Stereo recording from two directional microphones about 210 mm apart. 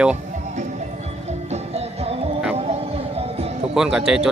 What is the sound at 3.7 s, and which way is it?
Speech, 5° right (ahead or behind).